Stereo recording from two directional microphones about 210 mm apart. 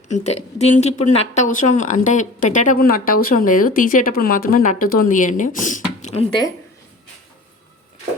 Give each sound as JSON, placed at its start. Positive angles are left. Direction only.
{"t": 0.1, "sound": "speech", "side_deg": 30}